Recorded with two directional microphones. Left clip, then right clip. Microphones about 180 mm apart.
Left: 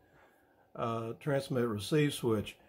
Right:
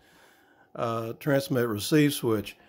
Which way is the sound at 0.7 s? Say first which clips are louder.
Right 6 dB; 30° right (ahead or behind).